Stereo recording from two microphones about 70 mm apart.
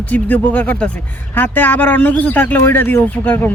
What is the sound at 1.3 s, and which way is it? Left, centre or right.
Speech, left.